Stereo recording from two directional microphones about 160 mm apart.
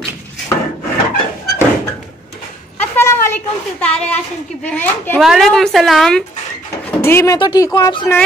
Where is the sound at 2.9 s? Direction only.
15° left (ahead or behind).